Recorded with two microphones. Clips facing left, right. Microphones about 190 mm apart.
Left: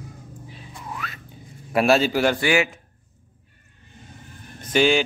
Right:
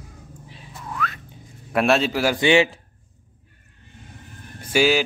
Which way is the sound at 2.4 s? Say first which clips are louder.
Right 4 dB; 30° right (ahead or behind).